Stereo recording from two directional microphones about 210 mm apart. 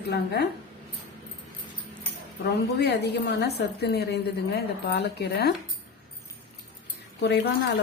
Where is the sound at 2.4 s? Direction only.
55° left (ahead or behind).